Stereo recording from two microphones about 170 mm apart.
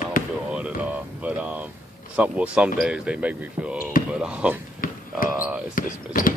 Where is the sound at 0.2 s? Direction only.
55° left (ahead or behind).